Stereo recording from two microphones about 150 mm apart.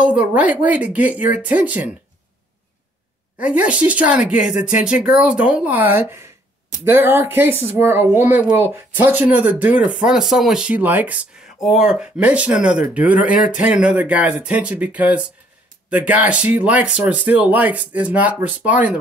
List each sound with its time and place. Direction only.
0.0 s speech: 10° right (ahead or behind)
3.3 s speech: 10° right (ahead or behind)
4.6 s speech: 55° left (ahead or behind)
5.1 s speech: 10° right (ahead or behind)